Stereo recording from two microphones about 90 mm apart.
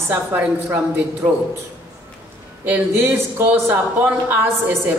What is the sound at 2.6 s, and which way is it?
Speech, 25° right (ahead or behind).